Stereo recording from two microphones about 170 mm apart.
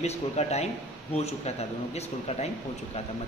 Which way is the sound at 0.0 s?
40° left (ahead or behind).